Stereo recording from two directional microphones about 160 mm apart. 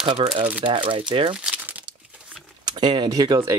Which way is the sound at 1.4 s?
10° right (ahead or behind).